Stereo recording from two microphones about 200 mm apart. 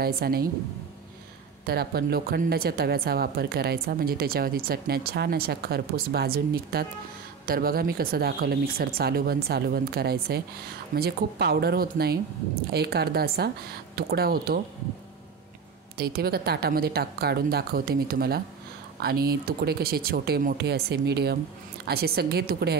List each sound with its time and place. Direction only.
0.0 s a woman's voice: 50° right (ahead or behind)
1.7 s a woman's voice: 50° right (ahead or behind)
16.0 s a woman's voice: 50° right (ahead or behind)